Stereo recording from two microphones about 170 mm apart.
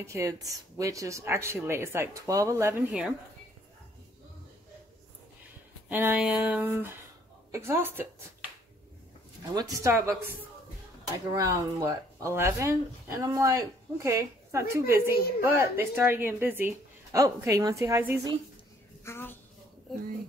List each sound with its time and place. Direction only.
0.0 s a woman's voice: 15° right (ahead or behind)
2.9 s speech: 5° right (ahead or behind)
5.9 s a woman's voice: 10° right (ahead or behind)
9.5 s a woman's voice: 20° right (ahead or behind)
11.3 s a woman's voice: 20° right (ahead or behind)
19.0 s a woman's voice: 15° left (ahead or behind)